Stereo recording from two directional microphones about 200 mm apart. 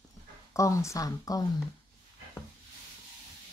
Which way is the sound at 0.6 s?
15° left (ahead or behind).